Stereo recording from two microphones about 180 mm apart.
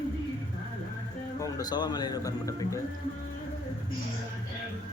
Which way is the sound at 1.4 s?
20° left (ahead or behind).